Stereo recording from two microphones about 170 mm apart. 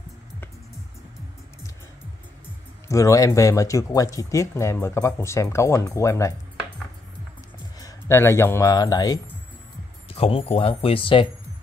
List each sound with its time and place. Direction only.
2.9 s speech: 20° left (ahead or behind)
7.8 s speech: 15° left (ahead or behind)
10.0 s speech: 35° left (ahead or behind)